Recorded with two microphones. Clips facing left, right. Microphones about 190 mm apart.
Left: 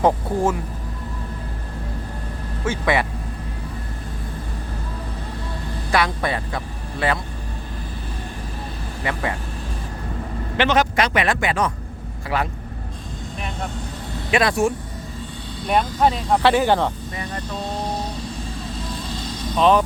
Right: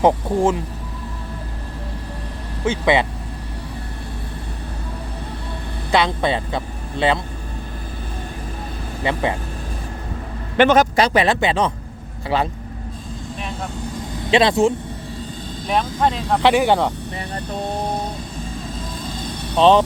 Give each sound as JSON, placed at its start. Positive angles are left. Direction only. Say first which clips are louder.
{"t": 0.0, "sound": "speech", "louder": "right 3 dB", "side_deg": -20}
{"t": 2.8, "sound": "speech", "louder": "right 4 dB", "side_deg": -20}
{"t": 5.9, "sound": "speech", "louder": "right 3 dB", "side_deg": -25}
{"t": 9.0, "sound": "speech", "louder": "right 4 dB", "side_deg": -25}
{"t": 10.6, "sound": "a man's voice", "louder": "right 5 dB", "side_deg": -50}
{"t": 10.9, "sound": "speech", "louder": "right 4 dB", "side_deg": -35}
{"t": 14.3, "sound": "speech", "louder": "right 4 dB", "side_deg": -25}
{"t": 16.0, "sound": "speech", "louder": "left 1 dB", "side_deg": 0}
{"t": 16.4, "sound": "speech", "louder": "right 3 dB", "side_deg": -15}
{"t": 17.5, "sound": "music", "louder": "right 4 dB", "side_deg": -60}
{"t": 19.0, "sound": "vehicle", "louder": "even", "side_deg": -55}
{"t": 19.5, "sound": "speech", "louder": "right 3 dB", "side_deg": -25}